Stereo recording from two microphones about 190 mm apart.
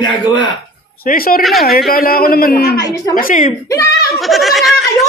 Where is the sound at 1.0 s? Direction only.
50° left (ahead or behind).